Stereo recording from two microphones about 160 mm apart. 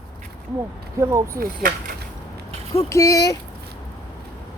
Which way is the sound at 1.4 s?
65° right (ahead or behind).